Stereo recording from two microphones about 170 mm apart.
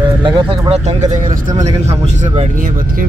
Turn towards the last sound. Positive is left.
turn(degrees=-40)  # may be behind; listen again after turning